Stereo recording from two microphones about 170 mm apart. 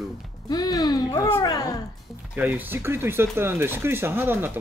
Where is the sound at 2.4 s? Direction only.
10° right (ahead or behind).